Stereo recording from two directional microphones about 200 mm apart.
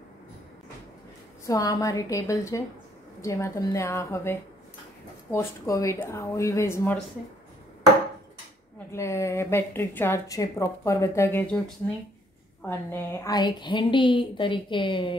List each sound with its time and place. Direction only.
1.4 s speech: 15° left (ahead or behind)
8.9 s a woman's voice: 15° left (ahead or behind)